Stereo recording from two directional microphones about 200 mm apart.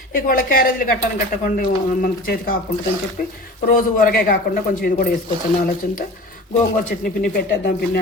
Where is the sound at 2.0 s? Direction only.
50° left (ahead or behind).